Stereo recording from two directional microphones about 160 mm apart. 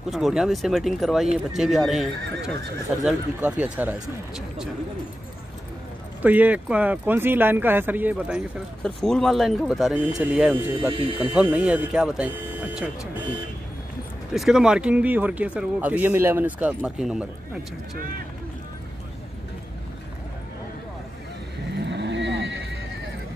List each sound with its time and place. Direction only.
0.1 s speech: centre (ahead or behind)
6.2 s speech: 10° right (ahead or behind)
8.8 s speech: 5° left (ahead or behind); by 10.9 s 10° right (ahead or behind)
10.9 s speech: 35° right (ahead or behind)
11.5 s speech: 10° right (ahead or behind)
14.3 s speech: 5° right (ahead or behind)
21.8 s vehicle: 90° right